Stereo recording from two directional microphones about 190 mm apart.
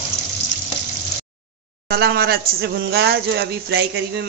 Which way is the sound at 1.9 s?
55° right (ahead or behind).